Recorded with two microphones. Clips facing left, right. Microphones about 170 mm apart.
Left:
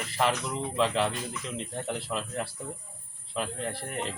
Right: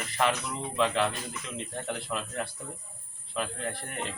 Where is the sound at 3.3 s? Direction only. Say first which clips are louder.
Left 1 dB; centre (ahead or behind).